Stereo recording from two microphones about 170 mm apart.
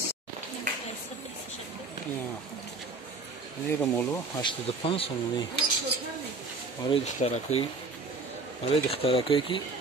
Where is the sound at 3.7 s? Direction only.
15° left (ahead or behind).